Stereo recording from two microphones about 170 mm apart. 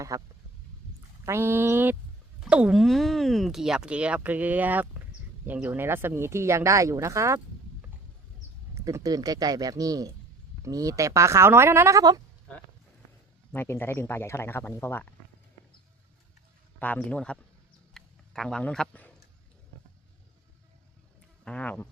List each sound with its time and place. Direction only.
0.1 s a man's voice: 20° right (ahead or behind)
13.5 s speech: 15° left (ahead or behind)
16.8 s speech: 10° left (ahead or behind)
17.9 s a sound: 5° left (ahead or behind)
21.4 s speech: 5° left (ahead or behind)